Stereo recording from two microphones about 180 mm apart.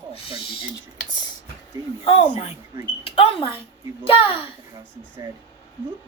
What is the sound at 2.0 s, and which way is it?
Speech, 35° left (ahead or behind).